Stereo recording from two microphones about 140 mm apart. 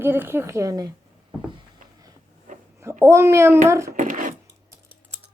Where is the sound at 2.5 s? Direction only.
65° right (ahead or behind).